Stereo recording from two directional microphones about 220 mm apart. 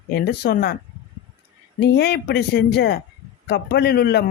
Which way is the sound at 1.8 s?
50° left (ahead or behind).